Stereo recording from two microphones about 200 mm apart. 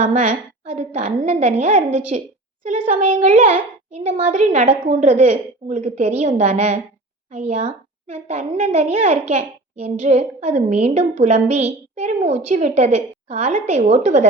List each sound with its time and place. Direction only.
0.0 s a woman's voice: 35° right (ahead or behind)